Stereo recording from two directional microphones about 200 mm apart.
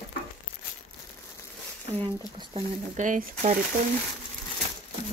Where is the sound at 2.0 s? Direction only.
25° right (ahead or behind).